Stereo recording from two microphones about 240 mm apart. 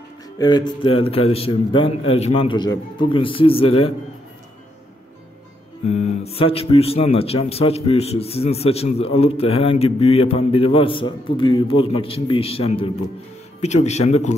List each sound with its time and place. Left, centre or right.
0.4 s speech: centre
5.9 s speech: left